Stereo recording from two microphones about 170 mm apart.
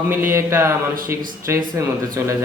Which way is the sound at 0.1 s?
15° right (ahead or behind).